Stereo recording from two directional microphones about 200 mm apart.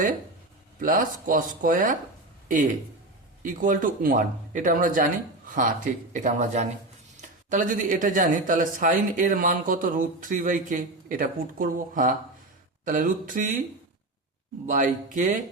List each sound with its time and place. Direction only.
0.8 s speech: 45° right (ahead or behind)
3.4 s speech: 45° right (ahead or behind)
14.7 s speech: 40° right (ahead or behind)